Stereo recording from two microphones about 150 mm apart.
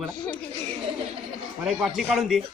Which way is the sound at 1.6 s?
5° right (ahead or behind).